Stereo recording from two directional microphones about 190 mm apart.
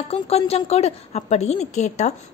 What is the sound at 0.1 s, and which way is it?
A woman's voice, 30° left (ahead or behind).